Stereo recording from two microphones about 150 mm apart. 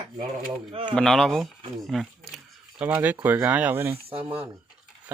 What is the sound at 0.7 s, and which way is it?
Speech, 35° right (ahead or behind).